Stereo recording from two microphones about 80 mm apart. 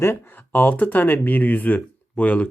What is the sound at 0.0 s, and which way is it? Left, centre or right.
Speech, left.